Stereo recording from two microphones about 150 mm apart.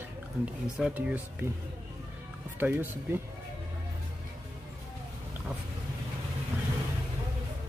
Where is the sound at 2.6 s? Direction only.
15° right (ahead or behind).